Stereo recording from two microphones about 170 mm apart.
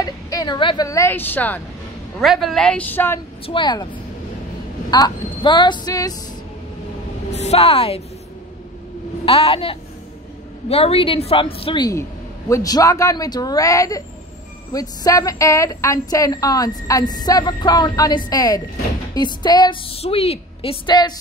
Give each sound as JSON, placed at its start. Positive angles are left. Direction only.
{"t": 0.0, "sound": "speech", "side_deg": 20}
{"t": 2.1, "sound": "speech", "side_deg": 0}
{"t": 3.4, "sound": "a woman's voice", "side_deg": 30}
{"t": 4.9, "sound": "a woman's voice", "side_deg": 25}
{"t": 7.3, "sound": "speech", "side_deg": 35}
{"t": 9.2, "sound": "a woman's voice", "side_deg": 35}